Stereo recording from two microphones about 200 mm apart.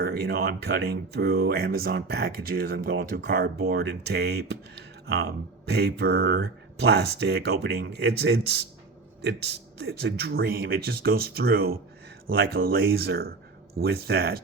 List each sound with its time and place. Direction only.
0.0 s speech: 50° right (ahead or behind)
5.6 s speech: 55° right (ahead or behind)
9.7 s speech: 55° right (ahead or behind)